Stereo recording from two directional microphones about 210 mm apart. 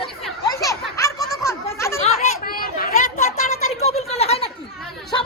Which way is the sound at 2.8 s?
40° left (ahead or behind).